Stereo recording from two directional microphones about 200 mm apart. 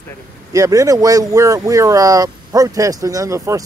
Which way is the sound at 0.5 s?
15° right (ahead or behind).